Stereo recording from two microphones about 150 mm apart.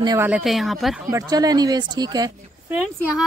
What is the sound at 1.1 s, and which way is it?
Speech, 25° right (ahead or behind).